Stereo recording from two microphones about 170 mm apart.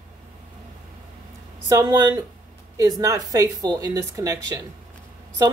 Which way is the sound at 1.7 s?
20° right (ahead or behind).